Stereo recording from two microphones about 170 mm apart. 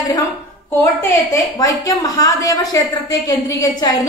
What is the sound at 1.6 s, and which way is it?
A woman's voice, 20° left (ahead or behind).